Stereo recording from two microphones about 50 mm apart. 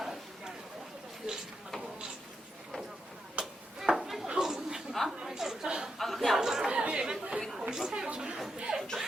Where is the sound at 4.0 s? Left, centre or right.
Centre.